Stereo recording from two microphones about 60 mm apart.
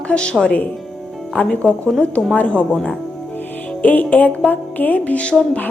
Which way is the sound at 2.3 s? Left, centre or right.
Left.